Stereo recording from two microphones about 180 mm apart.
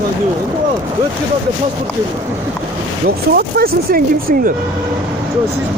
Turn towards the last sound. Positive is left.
turn(degrees=-55)  # may be behind; listen again after turning